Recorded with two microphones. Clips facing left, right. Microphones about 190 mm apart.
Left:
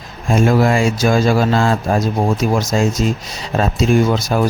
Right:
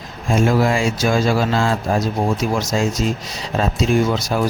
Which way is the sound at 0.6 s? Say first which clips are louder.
Left 3 dB; 55° left (ahead or behind).